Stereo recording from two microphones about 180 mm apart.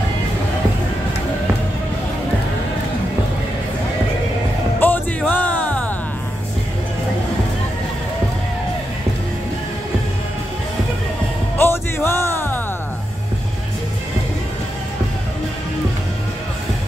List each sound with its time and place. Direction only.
4.7 s music: 10° left (ahead or behind)
11.5 s music: 15° left (ahead or behind)